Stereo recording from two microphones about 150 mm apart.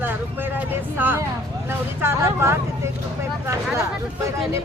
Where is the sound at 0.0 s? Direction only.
15° right (ahead or behind).